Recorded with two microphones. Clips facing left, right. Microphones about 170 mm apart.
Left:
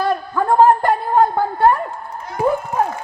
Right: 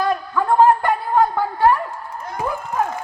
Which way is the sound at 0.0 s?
30° left (ahead or behind).